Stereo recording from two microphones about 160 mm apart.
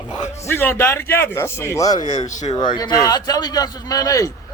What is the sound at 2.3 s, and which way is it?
Speech, 50° left (ahead or behind).